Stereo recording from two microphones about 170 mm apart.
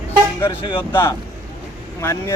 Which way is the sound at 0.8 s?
10° left (ahead or behind).